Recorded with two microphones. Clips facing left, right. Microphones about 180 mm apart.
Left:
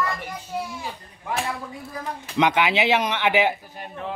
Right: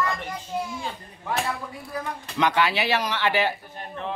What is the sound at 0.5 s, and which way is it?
Speech, 5° left (ahead or behind).